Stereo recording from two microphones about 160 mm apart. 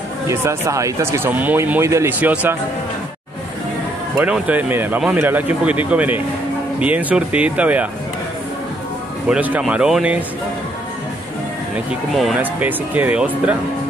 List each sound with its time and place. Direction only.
0.3 s speech: 20° right (ahead or behind)
4.2 s speech: 10° right (ahead or behind)
9.3 s speech: 10° right (ahead or behind)
11.9 s speech: centre (ahead or behind)